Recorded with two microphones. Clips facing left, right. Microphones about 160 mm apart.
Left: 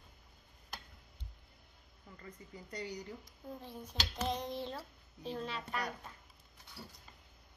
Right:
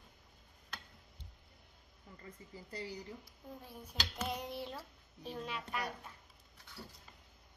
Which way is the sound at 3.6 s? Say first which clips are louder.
Left 1 dB; 10° right (ahead or behind).